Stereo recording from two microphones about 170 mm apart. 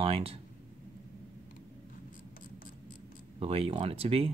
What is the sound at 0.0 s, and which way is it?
Speech, 35° right (ahead or behind).